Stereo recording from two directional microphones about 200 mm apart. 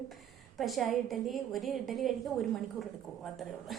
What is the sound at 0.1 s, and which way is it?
A woman's voice, centre (ahead or behind).